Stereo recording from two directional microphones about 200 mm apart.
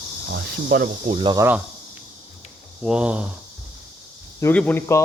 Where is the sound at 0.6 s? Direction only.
45° right (ahead or behind).